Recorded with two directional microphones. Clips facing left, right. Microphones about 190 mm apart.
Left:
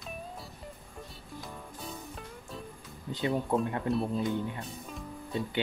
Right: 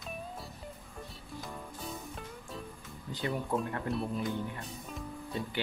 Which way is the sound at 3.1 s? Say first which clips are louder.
Left 4 dB; 25° left (ahead or behind).